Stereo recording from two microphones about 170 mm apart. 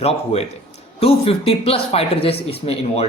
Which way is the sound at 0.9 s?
35° left (ahead or behind).